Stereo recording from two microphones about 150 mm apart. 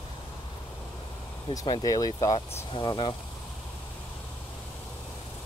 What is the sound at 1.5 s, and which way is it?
Speech, 25° left (ahead or behind).